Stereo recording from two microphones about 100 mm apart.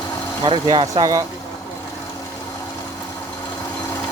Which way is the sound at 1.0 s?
35° right (ahead or behind).